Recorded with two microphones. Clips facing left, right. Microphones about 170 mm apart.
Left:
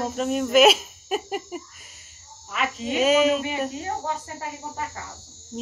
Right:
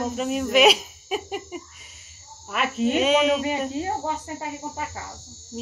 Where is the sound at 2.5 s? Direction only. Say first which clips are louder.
Right 5 dB; 55° right (ahead or behind).